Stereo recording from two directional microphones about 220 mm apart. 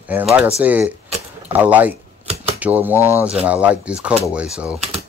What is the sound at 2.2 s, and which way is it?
Typewriter, 30° right (ahead or behind).